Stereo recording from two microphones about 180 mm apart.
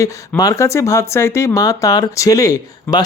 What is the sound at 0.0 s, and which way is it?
Speech, 15° left (ahead or behind).